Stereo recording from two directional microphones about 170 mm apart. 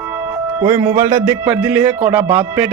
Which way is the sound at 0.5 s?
15° right (ahead or behind).